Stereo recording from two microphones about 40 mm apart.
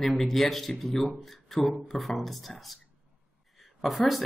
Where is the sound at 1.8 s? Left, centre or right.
Centre.